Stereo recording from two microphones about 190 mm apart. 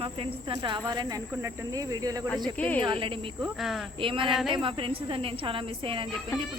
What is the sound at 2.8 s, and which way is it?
Speech, 25° right (ahead or behind).